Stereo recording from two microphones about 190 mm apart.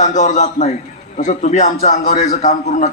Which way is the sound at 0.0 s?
40° left (ahead or behind).